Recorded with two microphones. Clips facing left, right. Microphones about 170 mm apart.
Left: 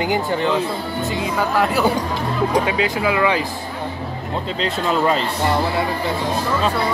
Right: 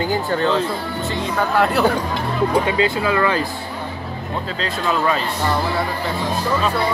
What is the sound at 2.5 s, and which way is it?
Speech, 15° left (ahead or behind).